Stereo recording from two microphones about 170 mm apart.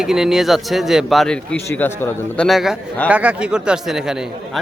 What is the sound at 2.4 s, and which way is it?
A man's voice, centre (ahead or behind).